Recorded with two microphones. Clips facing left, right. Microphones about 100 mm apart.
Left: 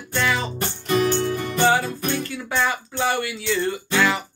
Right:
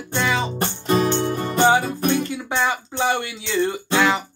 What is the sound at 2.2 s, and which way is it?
Music, 20° right (ahead or behind).